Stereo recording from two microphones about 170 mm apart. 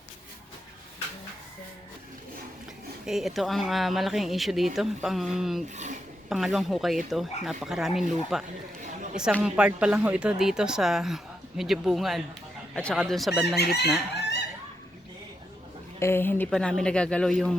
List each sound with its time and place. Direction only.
3.1 s speech: centre (ahead or behind)
5.7 s a sound: 45° right (ahead or behind)
6.2 s speech: centre (ahead or behind)
13.6 s chicken: 70° left (ahead or behind)
14.1 s fowl: 80° left
16.0 s speech: 15° left (ahead or behind)